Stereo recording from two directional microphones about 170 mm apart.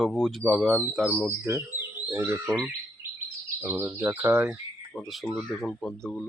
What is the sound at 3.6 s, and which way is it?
Speech, 15° right (ahead or behind).